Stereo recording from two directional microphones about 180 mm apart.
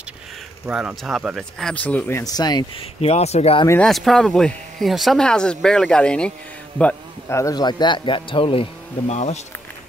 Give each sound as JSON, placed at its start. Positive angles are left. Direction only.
{"t": 0.7, "sound": "speech", "side_deg": -5}
{"t": 3.0, "sound": "speech", "side_deg": 35}
{"t": 3.8, "sound": "speech", "side_deg": 0}